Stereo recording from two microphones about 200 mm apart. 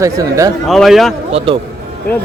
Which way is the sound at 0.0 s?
15° right (ahead or behind).